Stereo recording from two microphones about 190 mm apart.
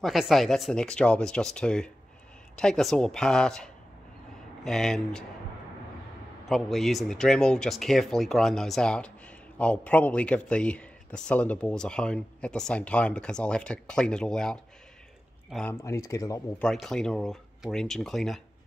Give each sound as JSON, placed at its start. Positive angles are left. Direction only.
{"t": 0.0, "sound": "speech", "side_deg": 0}
{"t": 6.5, "sound": "speech", "side_deg": 0}
{"t": 15.7, "sound": "speech", "side_deg": 15}
{"t": 16.6, "sound": "speech", "side_deg": 0}